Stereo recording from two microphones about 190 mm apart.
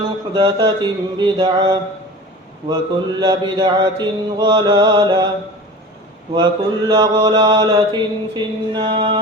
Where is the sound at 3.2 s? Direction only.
20° right (ahead or behind).